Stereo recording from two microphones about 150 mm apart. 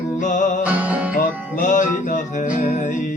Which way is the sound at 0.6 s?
10° right (ahead or behind).